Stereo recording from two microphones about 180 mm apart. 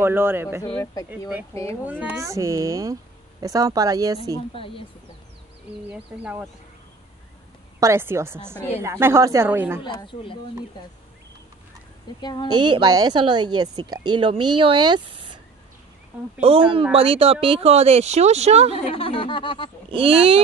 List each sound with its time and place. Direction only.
0.0 s a woman's voice: 10° right (ahead or behind)
1.5 s speech: 15° left (ahead or behind)
1.9 s a woman's voice: 10° right (ahead or behind)
4.6 s speech: 30° left (ahead or behind)
5.9 s a woman's voice: 5° right (ahead or behind)
7.8 s a woman's voice: 15° right (ahead or behind)
9.9 s speech: 30° left (ahead or behind)
12.2 s speech: 25° left (ahead or behind)
12.6 s a woman's voice: 25° right (ahead or behind)
16.4 s a woman's voice: 30° right (ahead or behind)
18.9 s speech: 30° left (ahead or behind)
19.9 s a woman's voice: 30° right (ahead or behind)